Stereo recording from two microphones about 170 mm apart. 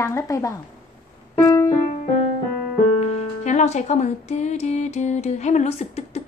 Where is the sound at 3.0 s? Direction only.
40° left (ahead or behind).